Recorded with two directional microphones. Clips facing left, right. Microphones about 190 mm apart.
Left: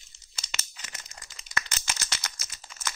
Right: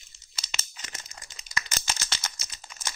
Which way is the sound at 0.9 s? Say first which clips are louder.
Right 1 dB; 25° right (ahead or behind).